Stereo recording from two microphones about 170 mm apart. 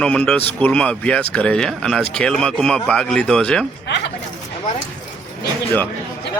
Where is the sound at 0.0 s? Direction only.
5° left (ahead or behind).